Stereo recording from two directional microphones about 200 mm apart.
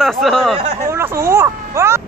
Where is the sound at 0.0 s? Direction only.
Centre (ahead or behind).